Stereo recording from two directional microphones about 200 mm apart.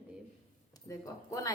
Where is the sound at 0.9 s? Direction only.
15° left (ahead or behind).